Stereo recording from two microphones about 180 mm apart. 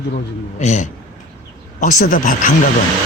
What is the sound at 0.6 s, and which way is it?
A man's voice, 40° left (ahead or behind).